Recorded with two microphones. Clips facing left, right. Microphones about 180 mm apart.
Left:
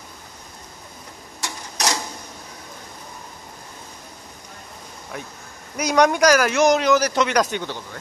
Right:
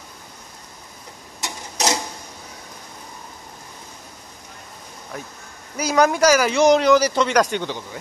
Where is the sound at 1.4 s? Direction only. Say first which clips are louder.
Right 2 dB; 20° right (ahead or behind).